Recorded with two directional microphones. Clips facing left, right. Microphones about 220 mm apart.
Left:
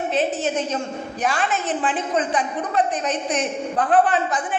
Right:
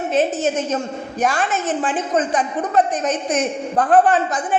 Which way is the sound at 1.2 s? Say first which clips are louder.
Right 3 dB; 45° right (ahead or behind).